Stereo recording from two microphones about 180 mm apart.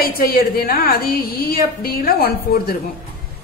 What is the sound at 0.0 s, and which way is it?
A woman's voice, 55° left (ahead or behind).